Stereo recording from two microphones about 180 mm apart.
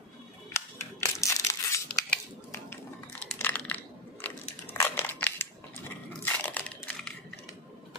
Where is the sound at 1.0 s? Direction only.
15° left (ahead or behind).